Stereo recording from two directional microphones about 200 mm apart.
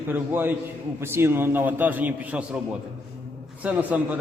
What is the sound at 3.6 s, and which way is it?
Speech, 10° right (ahead or behind).